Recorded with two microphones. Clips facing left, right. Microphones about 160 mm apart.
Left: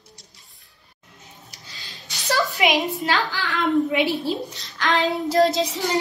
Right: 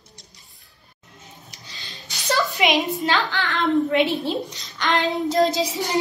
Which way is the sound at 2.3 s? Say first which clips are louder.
Even; 5° left (ahead or behind).